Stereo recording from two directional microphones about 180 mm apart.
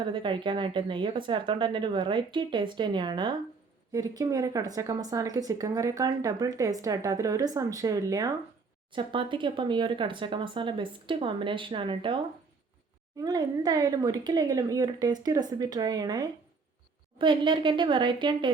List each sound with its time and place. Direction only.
0.0 s a woman's voice: 25° right (ahead or behind)